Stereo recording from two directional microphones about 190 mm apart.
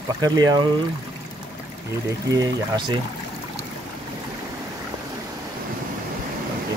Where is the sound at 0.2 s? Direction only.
20° right (ahead or behind).